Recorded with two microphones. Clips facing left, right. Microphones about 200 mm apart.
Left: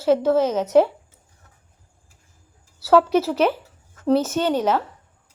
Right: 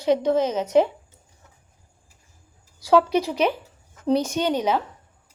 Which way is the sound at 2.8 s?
15° right (ahead or behind).